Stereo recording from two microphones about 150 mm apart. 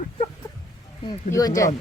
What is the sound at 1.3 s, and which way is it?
Speech, 15° left (ahead or behind).